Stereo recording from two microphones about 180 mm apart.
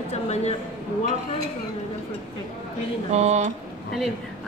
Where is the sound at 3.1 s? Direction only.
40° right (ahead or behind).